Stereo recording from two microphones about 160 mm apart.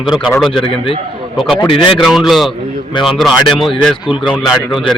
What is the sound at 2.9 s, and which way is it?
Speech, 30° left (ahead or behind).